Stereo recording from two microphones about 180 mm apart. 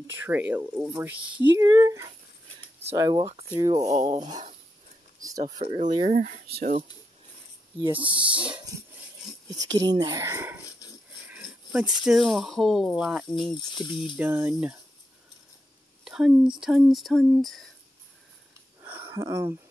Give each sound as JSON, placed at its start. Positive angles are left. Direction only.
{"t": 0.2, "sound": "speech", "side_deg": -10}
{"t": 3.8, "sound": "speech", "side_deg": -40}
{"t": 5.4, "sound": "speech", "side_deg": -35}
{"t": 6.0, "sound": "speech", "side_deg": -50}
{"t": 7.8, "sound": "speech", "side_deg": -30}
{"t": 9.2, "sound": "a sound", "side_deg": 0}
{"t": 9.6, "sound": "speech", "side_deg": -20}
{"t": 10.8, "sound": "a sound", "side_deg": 20}
{"t": 11.4, "sound": "speech", "side_deg": -5}
{"t": 16.0, "sound": "speech", "side_deg": -5}
{"t": 18.8, "sound": "a sound", "side_deg": -15}